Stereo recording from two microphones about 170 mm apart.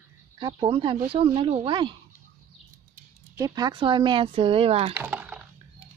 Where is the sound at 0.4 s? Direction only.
25° right (ahead or behind).